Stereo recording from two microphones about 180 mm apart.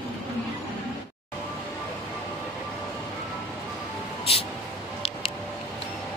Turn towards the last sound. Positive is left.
turn(degrees=35)  # may be behind; listen again after turning